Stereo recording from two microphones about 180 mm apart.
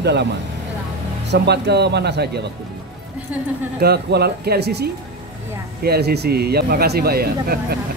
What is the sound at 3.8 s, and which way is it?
A man's voice, 60° right (ahead or behind).